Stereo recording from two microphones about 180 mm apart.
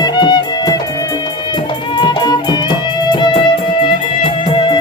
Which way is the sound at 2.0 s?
25° left (ahead or behind).